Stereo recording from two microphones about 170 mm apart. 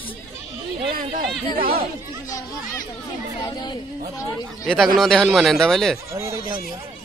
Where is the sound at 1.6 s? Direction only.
60° right (ahead or behind).